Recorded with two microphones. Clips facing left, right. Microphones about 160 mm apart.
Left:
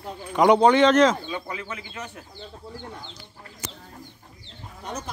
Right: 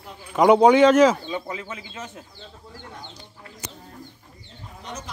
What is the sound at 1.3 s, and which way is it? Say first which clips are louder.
Speech: right 2 dB; 20° right (ahead or behind).